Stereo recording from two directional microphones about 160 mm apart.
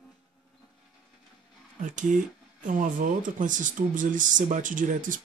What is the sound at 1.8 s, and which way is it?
Speech, 50° right (ahead or behind).